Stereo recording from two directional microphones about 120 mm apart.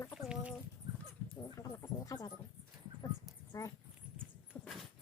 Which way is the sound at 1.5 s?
30° left (ahead or behind).